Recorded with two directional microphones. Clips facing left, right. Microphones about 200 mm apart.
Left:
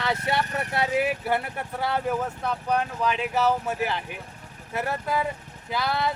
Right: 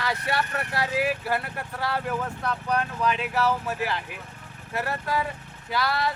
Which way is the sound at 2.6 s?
15° left (ahead or behind).